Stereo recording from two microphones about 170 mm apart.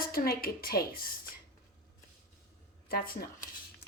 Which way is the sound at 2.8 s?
60° left (ahead or behind).